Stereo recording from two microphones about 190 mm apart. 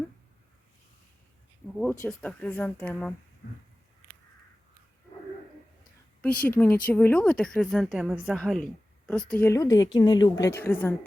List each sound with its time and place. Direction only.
1.8 s speech: 10° left (ahead or behind)
3.4 s a sound: 60° left (ahead or behind)
6.4 s speech: 10° left (ahead or behind)